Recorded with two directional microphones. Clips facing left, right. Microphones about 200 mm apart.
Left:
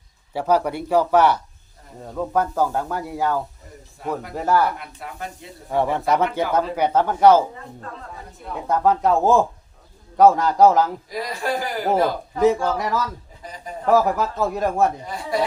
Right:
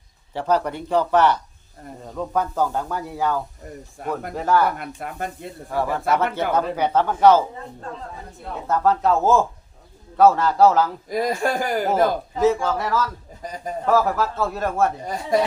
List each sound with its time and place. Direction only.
0.3 s speech: 10° left (ahead or behind)
3.6 s speech: 55° right (ahead or behind)
4.4 s speech: 10° left (ahead or behind)
4.9 s speech: 50° right (ahead or behind)
5.7 s speech: 20° left (ahead or behind)
8.6 s speech: 15° left (ahead or behind)
11.1 s speech: 50° right (ahead or behind)
12.6 s speech: 15° left (ahead or behind)
15.0 s speech: 45° right (ahead or behind)